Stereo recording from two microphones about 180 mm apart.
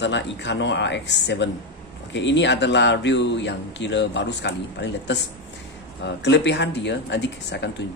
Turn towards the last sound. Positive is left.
turn(degrees=75)  # may be behind; listen again after turning